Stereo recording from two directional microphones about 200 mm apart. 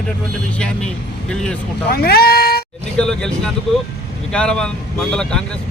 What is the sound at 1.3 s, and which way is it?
Speech, 5° left (ahead or behind).